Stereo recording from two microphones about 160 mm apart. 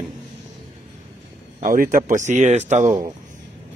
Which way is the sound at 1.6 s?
60° right (ahead or behind).